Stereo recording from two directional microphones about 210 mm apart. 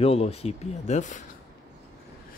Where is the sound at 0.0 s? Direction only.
30° left (ahead or behind).